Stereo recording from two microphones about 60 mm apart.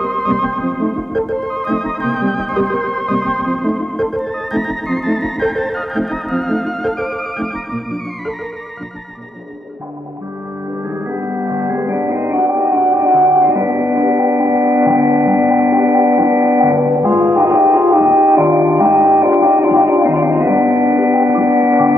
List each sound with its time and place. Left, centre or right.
0.0 s music: centre
11.1 s music: right